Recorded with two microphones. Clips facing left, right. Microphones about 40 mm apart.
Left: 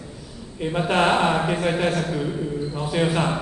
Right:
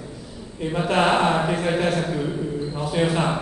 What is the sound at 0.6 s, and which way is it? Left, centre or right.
Speech, left.